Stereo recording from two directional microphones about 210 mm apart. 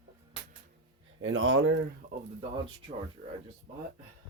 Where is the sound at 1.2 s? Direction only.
70° right (ahead or behind).